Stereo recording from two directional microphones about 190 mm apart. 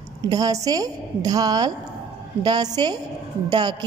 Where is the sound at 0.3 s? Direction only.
20° right (ahead or behind).